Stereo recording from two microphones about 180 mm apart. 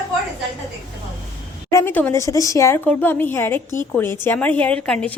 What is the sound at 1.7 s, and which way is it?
A woman's voice, 10° left (ahead or behind).